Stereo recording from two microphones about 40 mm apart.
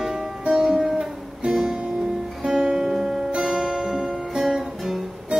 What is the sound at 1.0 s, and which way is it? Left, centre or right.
Guitar, centre.